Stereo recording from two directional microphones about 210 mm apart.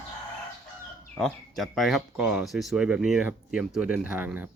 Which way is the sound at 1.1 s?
5° left (ahead or behind).